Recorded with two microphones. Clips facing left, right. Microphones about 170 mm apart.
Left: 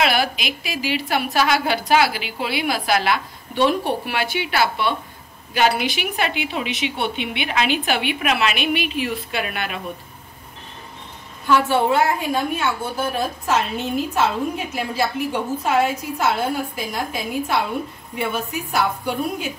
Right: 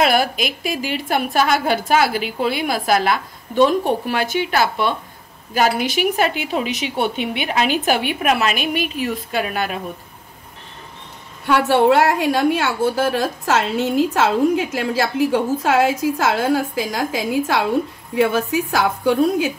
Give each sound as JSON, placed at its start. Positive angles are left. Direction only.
{"t": 0.0, "sound": "a woman's voice", "side_deg": -45}
{"t": 11.4, "sound": "a woman's voice", "side_deg": -65}